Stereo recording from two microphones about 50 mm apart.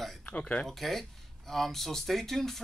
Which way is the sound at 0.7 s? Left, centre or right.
Centre.